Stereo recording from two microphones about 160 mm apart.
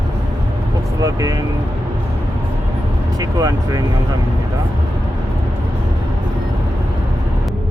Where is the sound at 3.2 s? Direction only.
25° right (ahead or behind).